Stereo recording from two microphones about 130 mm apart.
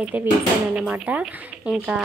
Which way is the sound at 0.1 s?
15° right (ahead or behind).